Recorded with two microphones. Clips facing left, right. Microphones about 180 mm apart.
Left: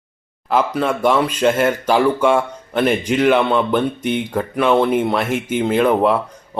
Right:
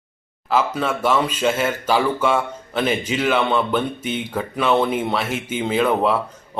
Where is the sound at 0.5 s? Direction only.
10° left (ahead or behind).